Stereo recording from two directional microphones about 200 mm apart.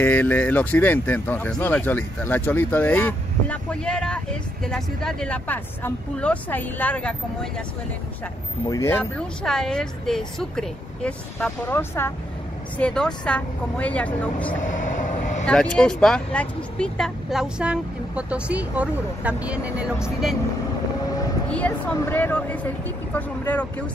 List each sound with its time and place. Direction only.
0.0 s speech: 10° left (ahead or behind)
8.6 s speech: 15° left (ahead or behind)
14.6 s vehicle: 40° left (ahead or behind)
15.4 s speech: 5° left (ahead or behind)
21.5 s speech: 5° left (ahead or behind)